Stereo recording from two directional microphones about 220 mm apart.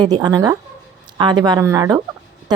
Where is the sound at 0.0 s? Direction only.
20° right (ahead or behind).